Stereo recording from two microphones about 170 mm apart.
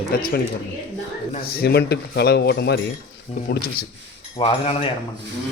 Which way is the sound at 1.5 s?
70° left (ahead or behind).